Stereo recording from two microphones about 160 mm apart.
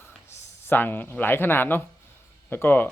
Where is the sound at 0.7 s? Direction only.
15° left (ahead or behind).